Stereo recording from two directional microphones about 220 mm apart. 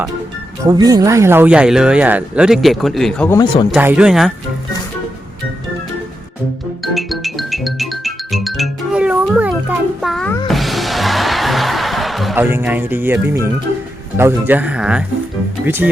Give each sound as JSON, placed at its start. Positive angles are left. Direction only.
{"t": 0.6, "sound": "speech", "side_deg": -15}
{"t": 3.3, "sound": "speech", "side_deg": 20}
{"t": 3.7, "sound": "speech", "side_deg": -5}
{"t": 6.8, "sound": "music", "side_deg": 0}
{"t": 14.2, "sound": "speech", "side_deg": -10}